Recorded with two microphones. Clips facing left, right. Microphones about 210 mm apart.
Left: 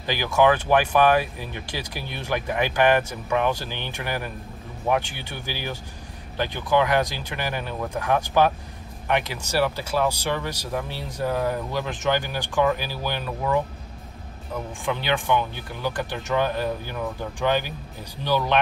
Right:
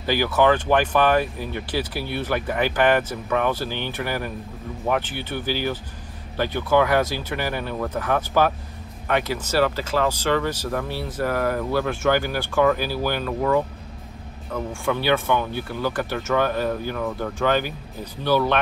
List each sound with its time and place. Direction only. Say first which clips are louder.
0.0 s speech: right 1 dB; 15° left (ahead or behind)
11.2 s speech: right 1 dB; 90° right
11.7 s speech: right 4 dB; 15° left (ahead or behind)
14.7 s speech: right 4 dB; 15° left (ahead or behind)